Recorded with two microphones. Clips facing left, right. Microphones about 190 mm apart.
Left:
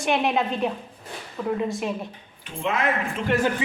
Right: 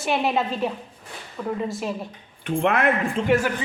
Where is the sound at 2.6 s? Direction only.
60° right (ahead or behind).